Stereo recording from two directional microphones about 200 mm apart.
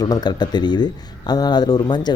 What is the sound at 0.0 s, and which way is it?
Speech, 20° left (ahead or behind).